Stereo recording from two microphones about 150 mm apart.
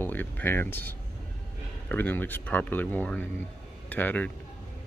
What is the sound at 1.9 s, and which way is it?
Speech, 10° left (ahead or behind).